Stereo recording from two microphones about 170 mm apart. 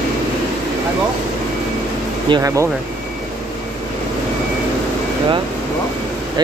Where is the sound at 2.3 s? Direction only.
20° right (ahead or behind).